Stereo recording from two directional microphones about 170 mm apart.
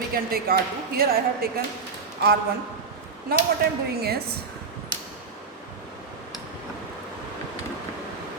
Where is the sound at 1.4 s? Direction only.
65° right (ahead or behind).